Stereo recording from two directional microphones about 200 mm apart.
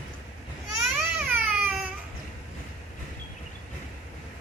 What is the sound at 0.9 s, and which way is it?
Baby cry, 10° right (ahead or behind).